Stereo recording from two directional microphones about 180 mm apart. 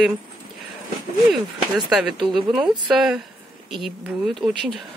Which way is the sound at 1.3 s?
Centre (ahead or behind).